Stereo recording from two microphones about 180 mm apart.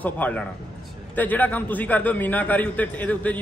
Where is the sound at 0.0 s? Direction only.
10° left (ahead or behind).